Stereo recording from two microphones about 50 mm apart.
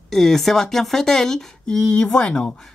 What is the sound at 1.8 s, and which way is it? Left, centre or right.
Speech, left.